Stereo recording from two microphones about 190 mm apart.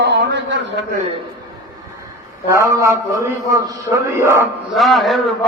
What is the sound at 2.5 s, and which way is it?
A man's voice, 15° right (ahead or behind).